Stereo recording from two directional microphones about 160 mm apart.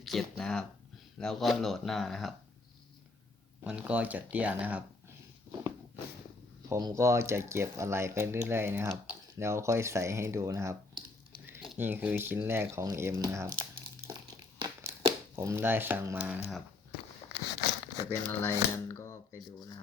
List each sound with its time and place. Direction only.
0.0 s speech: centre (ahead or behind)
3.6 s speech: 5° right (ahead or behind)
6.7 s speech: 20° right (ahead or behind)
11.8 s speech: 10° right (ahead or behind)
15.4 s speech: 15° right (ahead or behind)
17.4 s a sound: 90° left
18.3 s speech: 15° left (ahead or behind)